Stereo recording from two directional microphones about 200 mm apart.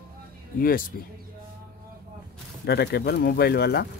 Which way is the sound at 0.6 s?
45° left (ahead or behind).